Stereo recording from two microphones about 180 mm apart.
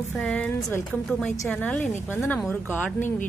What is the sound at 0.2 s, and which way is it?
A woman's voice, centre (ahead or behind).